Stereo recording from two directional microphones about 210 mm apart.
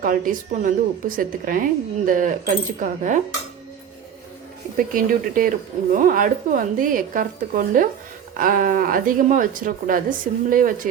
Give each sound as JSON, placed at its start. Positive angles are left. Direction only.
{"t": 0.0, "sound": "a woman's voice", "side_deg": -40}
{"t": 4.8, "sound": "a woman's voice", "side_deg": -40}